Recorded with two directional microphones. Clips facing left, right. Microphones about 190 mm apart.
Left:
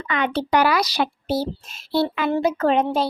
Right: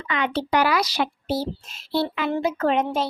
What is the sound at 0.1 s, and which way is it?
A child's voice, 50° left (ahead or behind).